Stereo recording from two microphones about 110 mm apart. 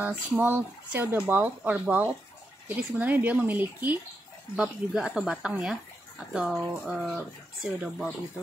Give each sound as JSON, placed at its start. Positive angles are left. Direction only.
{"t": 0.4, "sound": "speech", "side_deg": -20}